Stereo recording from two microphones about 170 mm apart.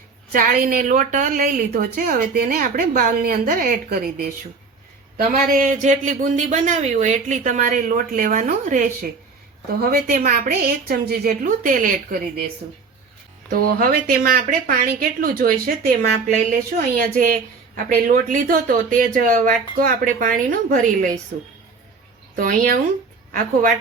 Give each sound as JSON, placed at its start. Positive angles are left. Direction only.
{"t": 0.3, "sound": "a woman's voice", "side_deg": -55}
{"t": 13.5, "sound": "a woman's voice", "side_deg": -55}
{"t": 17.0, "sound": "a man's voice", "side_deg": -55}
{"t": 22.4, "sound": "a man's voice", "side_deg": -55}